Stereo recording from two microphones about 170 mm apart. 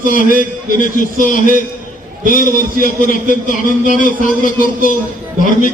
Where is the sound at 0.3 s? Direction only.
50° left (ahead or behind).